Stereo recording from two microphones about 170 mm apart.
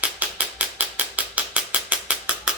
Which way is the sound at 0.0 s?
10° right (ahead or behind).